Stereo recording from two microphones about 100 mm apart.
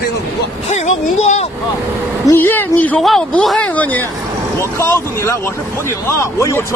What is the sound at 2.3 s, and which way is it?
Speech, 20° left (ahead or behind).